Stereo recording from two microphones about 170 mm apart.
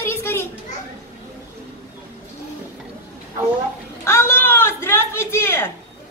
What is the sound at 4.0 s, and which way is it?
Speech, 15° left (ahead or behind).